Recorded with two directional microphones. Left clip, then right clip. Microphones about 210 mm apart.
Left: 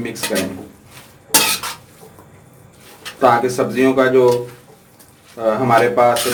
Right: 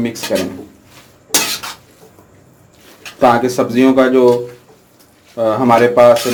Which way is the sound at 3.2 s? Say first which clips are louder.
Right 2 dB; 40° right (ahead or behind).